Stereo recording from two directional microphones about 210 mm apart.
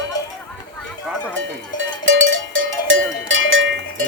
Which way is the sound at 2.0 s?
65° right (ahead or behind).